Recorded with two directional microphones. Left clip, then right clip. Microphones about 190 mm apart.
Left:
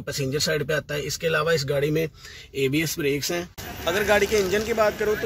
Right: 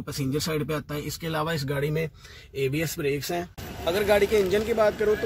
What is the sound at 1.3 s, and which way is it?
Speech, 15° left (ahead or behind).